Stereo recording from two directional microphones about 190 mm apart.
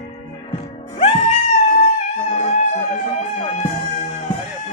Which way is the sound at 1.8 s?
35° left (ahead or behind).